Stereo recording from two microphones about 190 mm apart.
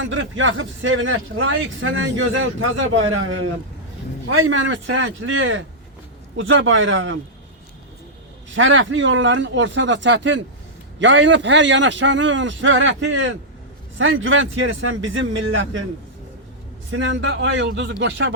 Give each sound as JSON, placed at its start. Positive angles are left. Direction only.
{"t": 0.0, "sound": "speech", "side_deg": -90}
{"t": 8.4, "sound": "a man's voice", "side_deg": -90}
{"t": 16.9, "sound": "a man's voice", "side_deg": -80}